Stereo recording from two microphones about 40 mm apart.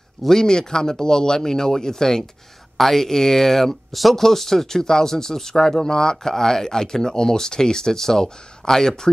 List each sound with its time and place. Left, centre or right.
0.3 s speech: centre